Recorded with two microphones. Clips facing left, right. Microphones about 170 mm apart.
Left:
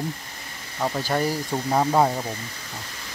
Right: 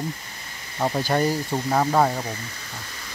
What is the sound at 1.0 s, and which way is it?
Speech, centre (ahead or behind).